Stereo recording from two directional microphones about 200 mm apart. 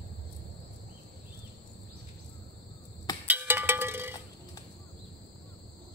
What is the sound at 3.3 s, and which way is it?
Music, 10° right (ahead or behind).